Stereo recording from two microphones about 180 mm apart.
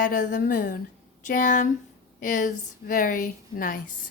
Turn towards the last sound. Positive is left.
turn(degrees=50)  # may be behind; listen again after turning